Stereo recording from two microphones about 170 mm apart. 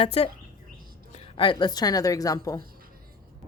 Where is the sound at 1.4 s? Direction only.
30° left (ahead or behind).